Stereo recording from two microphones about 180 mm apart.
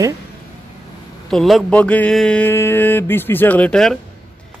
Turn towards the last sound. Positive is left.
turn(degrees=5)  # may be behind; listen again after turning